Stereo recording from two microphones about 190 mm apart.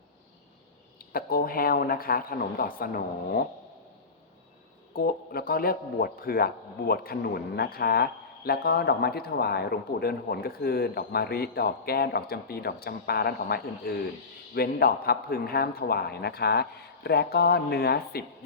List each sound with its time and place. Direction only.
0.9 s speech: 50° left (ahead or behind)
4.9 s speech: 50° left (ahead or behind)